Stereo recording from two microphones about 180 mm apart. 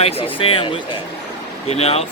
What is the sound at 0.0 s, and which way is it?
Speech, 30° left (ahead or behind).